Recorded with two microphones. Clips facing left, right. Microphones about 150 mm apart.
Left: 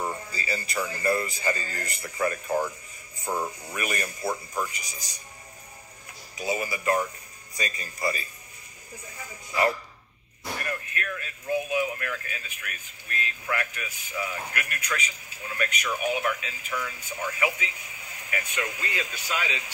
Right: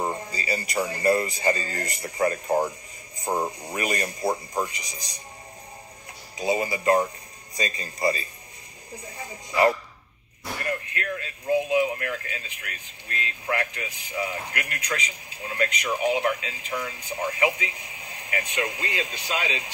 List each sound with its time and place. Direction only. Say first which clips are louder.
0.0 s radio: right 3 dB; 40° right (ahead or behind)
0.4 s music: right 3 dB; 15° right (ahead or behind)
1.5 s speech: right 5 dB; 20° right (ahead or behind)
2.0 s speech: right 3 dB; 35° right (ahead or behind)
3.6 s speech: right 4 dB; 15° right (ahead or behind)
6.3 s speech: right 4 dB; 20° right (ahead or behind)
8.9 s speech: right 4 dB; 40° right (ahead or behind)
9.5 s speech: right 4 dB; 20° right (ahead or behind)